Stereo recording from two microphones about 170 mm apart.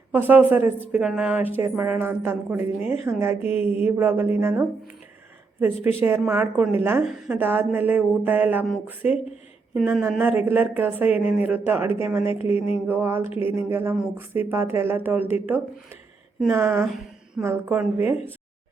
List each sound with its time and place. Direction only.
0.1 s a woman's voice: 10° right (ahead or behind)
12.2 s a woman's voice: 35° left (ahead or behind)
12.9 s a woman's voice: 15° right (ahead or behind)
16.8 s a sound: centre (ahead or behind)
17.4 s a woman's voice: 10° right (ahead or behind)